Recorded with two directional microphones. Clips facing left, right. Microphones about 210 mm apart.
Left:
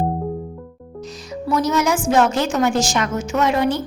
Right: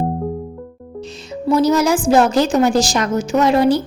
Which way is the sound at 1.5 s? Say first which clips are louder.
Right 5 dB; 30° right (ahead or behind).